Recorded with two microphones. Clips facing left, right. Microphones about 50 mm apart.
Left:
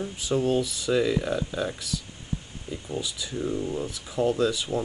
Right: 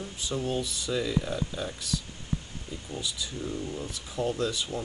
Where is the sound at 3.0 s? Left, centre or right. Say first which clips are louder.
Left 4 dB; left.